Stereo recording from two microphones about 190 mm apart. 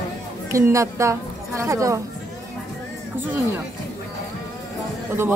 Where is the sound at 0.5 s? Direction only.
15° right (ahead or behind).